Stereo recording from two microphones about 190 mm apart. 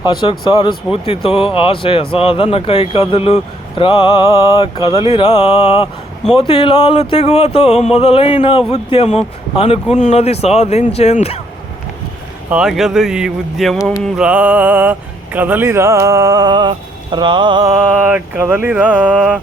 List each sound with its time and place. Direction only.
0.0 s speech: 25° left (ahead or behind)
12.5 s speech: 5° right (ahead or behind); by 17.7 s 20° right (ahead or behind)
17.8 s speech: 5° right (ahead or behind)